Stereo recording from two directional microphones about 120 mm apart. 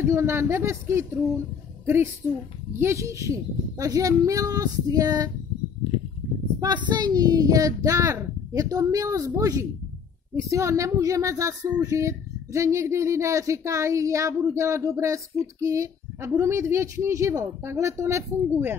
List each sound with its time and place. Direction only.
0.0 s speech: 25° right (ahead or behind)
2.8 s speech: 25° right (ahead or behind)
6.6 s speech: 35° right (ahead or behind); by 18.8 s 15° right (ahead or behind)